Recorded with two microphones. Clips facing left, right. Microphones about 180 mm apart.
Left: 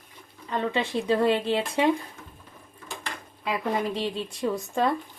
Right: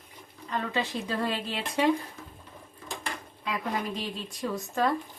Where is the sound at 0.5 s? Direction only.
30° left (ahead or behind).